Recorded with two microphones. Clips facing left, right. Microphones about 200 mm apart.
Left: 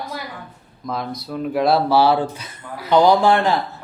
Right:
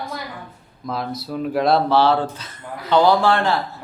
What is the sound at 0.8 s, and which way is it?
A man's voice, centre (ahead or behind).